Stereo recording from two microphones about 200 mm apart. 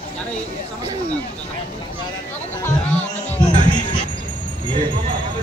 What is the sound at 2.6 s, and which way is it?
Speech, 5° left (ahead or behind).